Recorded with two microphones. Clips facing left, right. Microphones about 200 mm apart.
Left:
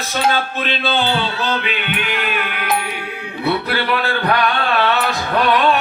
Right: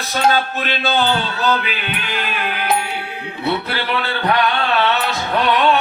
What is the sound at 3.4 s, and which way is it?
Music, 25° right (ahead or behind).